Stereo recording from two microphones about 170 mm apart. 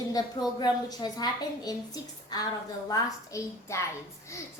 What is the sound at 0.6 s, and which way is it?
A woman's voice, 25° left (ahead or behind).